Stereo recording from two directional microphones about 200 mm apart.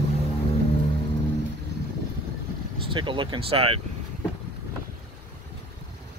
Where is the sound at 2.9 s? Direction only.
25° right (ahead or behind).